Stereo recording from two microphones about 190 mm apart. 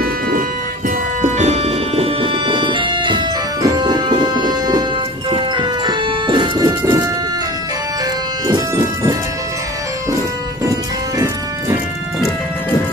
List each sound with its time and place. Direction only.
0.8 s music: 40° right (ahead or behind); by 7.1 s 20° right (ahead or behind)
8.5 s music: 15° right (ahead or behind)
10.6 s music: 20° right (ahead or behind)